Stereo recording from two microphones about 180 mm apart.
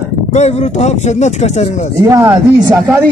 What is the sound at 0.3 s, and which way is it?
Speech, 35° left (ahead or behind).